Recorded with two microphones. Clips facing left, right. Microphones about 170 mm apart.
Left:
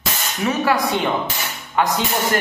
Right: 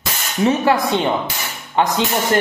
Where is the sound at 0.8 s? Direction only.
20° right (ahead or behind).